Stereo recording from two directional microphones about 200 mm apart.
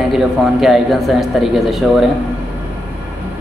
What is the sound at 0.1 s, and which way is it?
A man's voice, centre (ahead or behind).